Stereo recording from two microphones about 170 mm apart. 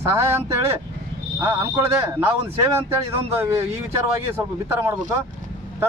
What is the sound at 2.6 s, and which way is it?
A man's voice, 15° right (ahead or behind).